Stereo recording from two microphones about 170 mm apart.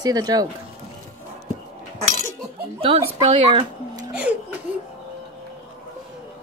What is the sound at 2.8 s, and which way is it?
Speech, 35° right (ahead or behind).